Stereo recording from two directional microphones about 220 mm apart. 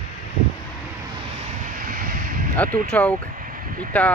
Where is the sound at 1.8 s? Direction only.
40° right (ahead or behind).